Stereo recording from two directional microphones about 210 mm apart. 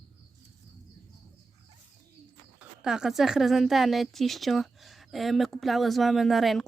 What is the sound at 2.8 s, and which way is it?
A woman's voice, 5° right (ahead or behind).